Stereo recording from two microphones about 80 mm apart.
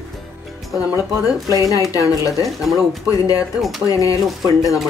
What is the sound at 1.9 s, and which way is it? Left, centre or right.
Speech, left.